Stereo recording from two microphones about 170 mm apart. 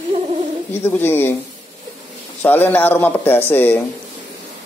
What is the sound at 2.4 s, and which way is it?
Speech, 10° left (ahead or behind).